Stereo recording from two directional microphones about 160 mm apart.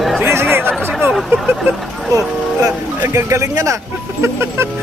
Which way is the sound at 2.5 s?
20° right (ahead or behind).